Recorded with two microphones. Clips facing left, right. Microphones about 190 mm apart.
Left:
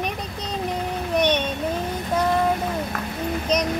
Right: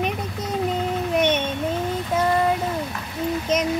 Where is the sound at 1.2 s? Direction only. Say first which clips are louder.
Left 1 dB; 5° right (ahead or behind).